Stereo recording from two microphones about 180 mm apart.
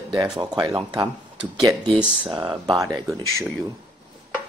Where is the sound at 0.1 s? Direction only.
20° right (ahead or behind).